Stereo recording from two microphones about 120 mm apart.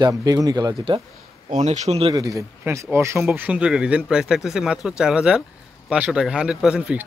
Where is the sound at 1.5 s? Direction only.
75° right (ahead or behind).